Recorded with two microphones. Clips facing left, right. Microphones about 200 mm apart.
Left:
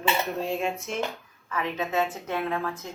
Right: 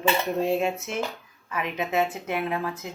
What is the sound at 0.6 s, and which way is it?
Speech, 5° right (ahead or behind).